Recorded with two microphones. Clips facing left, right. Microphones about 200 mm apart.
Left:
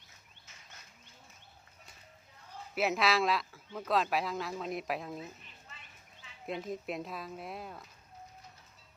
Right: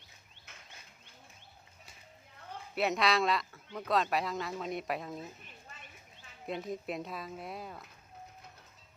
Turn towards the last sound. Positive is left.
turn(degrees=0)  # may be behind; listen again after turning